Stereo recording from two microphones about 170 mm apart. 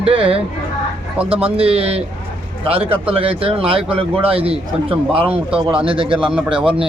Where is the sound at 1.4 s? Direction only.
35° right (ahead or behind).